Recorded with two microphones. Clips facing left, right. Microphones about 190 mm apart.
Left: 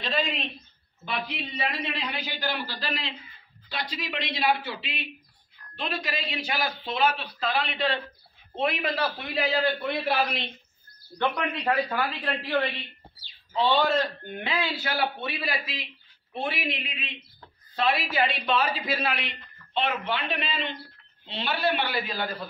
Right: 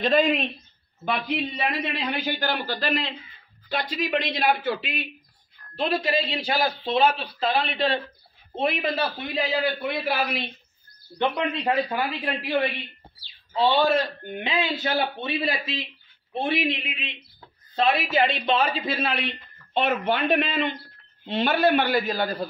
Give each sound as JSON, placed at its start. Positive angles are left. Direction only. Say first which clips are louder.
{"t": 0.0, "sound": "a man's voice", "louder": "right 9 dB", "side_deg": -50}
{"t": 5.8, "sound": "a man's voice", "louder": "right 8 dB", "side_deg": -30}
{"t": 9.8, "sound": "a man's voice", "louder": "even", "side_deg": 0}
{"t": 11.1, "sound": "a man's voice", "louder": "right 3 dB", "side_deg": -20}
{"t": 18.1, "sound": "a man's voice", "louder": "right 3 dB", "side_deg": -25}